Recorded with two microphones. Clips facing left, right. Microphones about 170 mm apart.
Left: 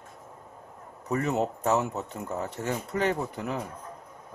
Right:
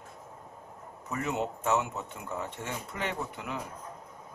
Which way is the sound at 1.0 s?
35° left (ahead or behind).